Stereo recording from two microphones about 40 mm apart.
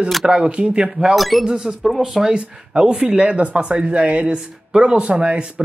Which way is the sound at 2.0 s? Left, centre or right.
Centre.